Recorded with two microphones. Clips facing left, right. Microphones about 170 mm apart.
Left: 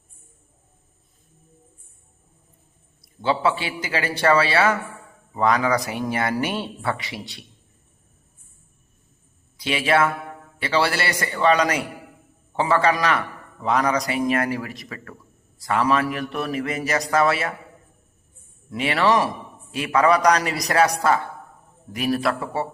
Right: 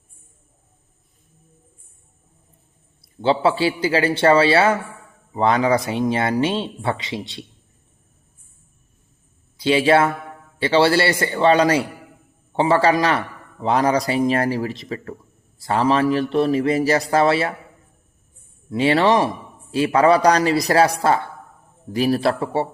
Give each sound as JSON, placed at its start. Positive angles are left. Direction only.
{"t": 3.0, "sound": "a man's voice", "side_deg": -30}
{"t": 9.6, "sound": "a man's voice", "side_deg": -30}
{"t": 18.7, "sound": "a man's voice", "side_deg": -30}